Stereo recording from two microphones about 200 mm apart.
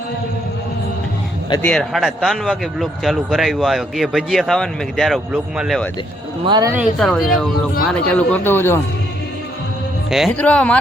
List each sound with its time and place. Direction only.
1.6 s speech: 5° left (ahead or behind)
6.4 s speech: 20° right (ahead or behind)
7.0 s speech: centre (ahead or behind)
10.1 s speech: centre (ahead or behind)